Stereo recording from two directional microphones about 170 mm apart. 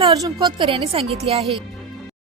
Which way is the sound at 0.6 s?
35° right (ahead or behind).